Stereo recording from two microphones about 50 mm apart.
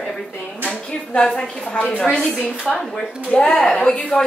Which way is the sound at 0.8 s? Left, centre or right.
Centre.